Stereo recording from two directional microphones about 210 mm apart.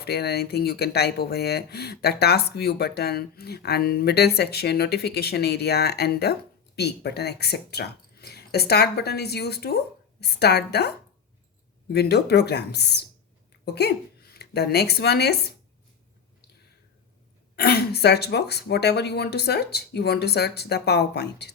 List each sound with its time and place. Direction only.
0.0 s speech: 50° left (ahead or behind)
17.6 s speech: 50° left (ahead or behind)